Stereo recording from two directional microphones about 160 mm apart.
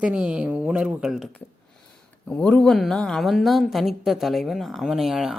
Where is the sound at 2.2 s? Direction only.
5° left (ahead or behind).